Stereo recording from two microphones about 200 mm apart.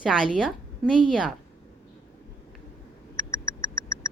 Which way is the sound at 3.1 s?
15° left (ahead or behind).